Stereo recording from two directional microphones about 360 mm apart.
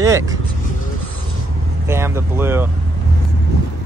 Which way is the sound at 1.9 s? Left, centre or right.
Centre.